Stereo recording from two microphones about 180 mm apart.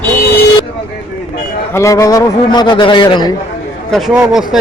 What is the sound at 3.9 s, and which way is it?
Speech, centre (ahead or behind).